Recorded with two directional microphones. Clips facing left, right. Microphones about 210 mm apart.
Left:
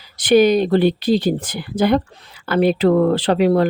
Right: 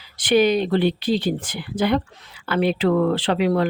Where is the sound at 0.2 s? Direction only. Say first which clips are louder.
Left 4 dB; 40° left (ahead or behind).